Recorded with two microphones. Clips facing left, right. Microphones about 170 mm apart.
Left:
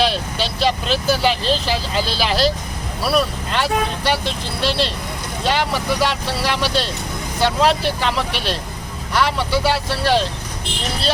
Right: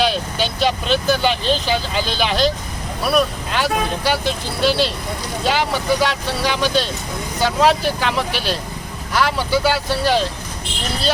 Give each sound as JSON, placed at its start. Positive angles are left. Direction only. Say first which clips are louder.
{"t": 0.0, "sound": "speech", "louder": "right 1 dB", "side_deg": 0}